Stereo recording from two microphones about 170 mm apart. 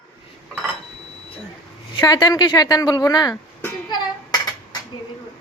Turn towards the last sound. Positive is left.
turn(degrees=25)  # may be behind; listen again after turning